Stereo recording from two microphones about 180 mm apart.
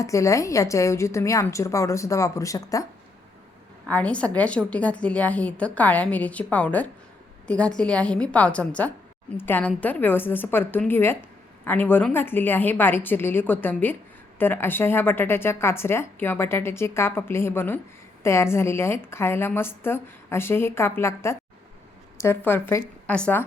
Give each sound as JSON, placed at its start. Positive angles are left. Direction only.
{"t": 0.0, "sound": "a woman's voice", "side_deg": 15}
{"t": 3.8, "sound": "a woman's voice", "side_deg": 5}